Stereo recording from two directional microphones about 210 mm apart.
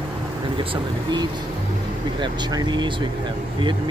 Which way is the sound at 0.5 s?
20° right (ahead or behind).